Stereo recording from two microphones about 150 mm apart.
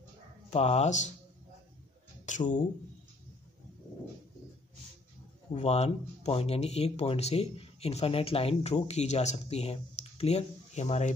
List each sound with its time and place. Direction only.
0.5 s speech: 45° left (ahead or behind)
2.2 s speech: 55° left (ahead or behind)
5.5 s speech: 45° left (ahead or behind)